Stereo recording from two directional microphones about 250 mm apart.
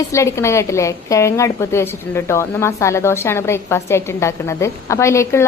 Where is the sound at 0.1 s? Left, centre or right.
Centre.